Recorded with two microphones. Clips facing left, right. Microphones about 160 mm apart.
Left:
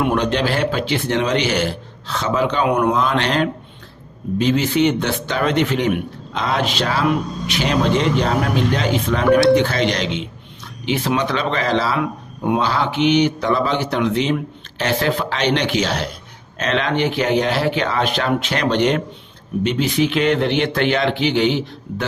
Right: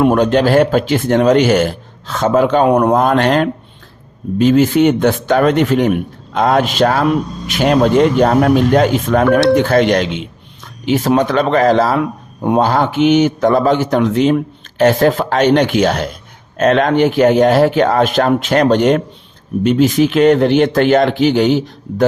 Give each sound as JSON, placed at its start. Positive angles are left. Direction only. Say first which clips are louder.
{"t": 0.0, "sound": "speech", "louder": "right 7 dB", "side_deg": -45}